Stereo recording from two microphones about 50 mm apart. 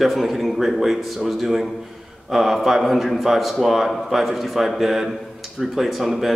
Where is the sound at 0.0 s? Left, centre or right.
Centre.